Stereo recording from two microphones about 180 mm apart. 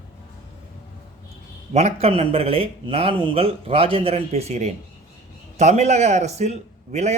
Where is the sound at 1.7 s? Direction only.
35° right (ahead or behind).